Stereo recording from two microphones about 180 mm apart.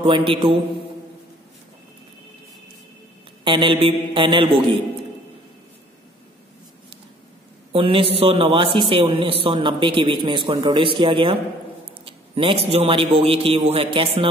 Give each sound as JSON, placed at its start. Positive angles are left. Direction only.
{"t": 0.0, "sound": "a man's voice", "side_deg": -30}
{"t": 3.4, "sound": "a man's voice", "side_deg": -30}
{"t": 7.7, "sound": "a man's voice", "side_deg": -30}